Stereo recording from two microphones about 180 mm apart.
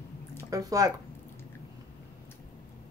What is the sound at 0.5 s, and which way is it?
Speech, 20° right (ahead or behind).